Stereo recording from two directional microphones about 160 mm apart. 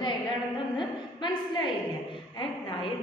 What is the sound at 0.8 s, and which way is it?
Speech, 30° left (ahead or behind).